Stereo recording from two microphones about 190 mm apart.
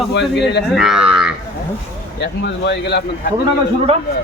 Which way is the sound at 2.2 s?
65° left (ahead or behind).